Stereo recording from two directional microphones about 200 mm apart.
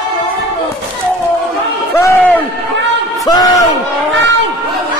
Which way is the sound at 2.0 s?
15° left (ahead or behind).